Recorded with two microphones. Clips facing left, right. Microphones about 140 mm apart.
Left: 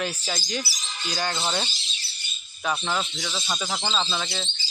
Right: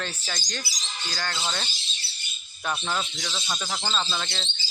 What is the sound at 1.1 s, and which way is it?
Speech, 15° left (ahead or behind).